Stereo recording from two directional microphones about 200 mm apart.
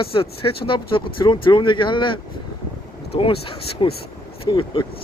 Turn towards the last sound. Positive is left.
turn(degrees=25)  # may be behind; listen again after turning